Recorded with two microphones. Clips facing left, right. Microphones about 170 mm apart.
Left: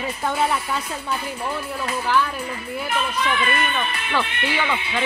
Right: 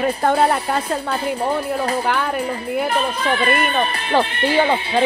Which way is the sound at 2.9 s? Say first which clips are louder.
Left 1 dB; 35° right (ahead or behind).